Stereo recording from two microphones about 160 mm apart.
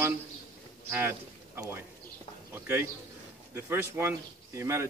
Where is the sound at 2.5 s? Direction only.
15° right (ahead or behind).